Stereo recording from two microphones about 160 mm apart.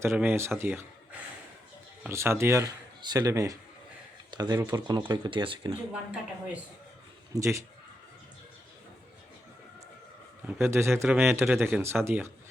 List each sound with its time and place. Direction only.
0.0 s a man's voice: 15° right (ahead or behind)
2.0 s speech: 15° right (ahead or behind); by 5.7 s 30° right (ahead or behind)
5.9 s a man's voice: 5° right (ahead or behind)
7.3 s a man's voice: 20° right (ahead or behind)
10.4 s a man's voice: 15° right (ahead or behind)